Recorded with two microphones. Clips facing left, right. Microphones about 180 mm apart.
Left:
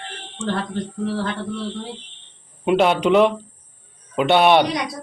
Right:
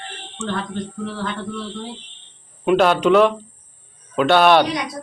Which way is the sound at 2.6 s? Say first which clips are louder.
Right 1 dB; 20° left (ahead or behind).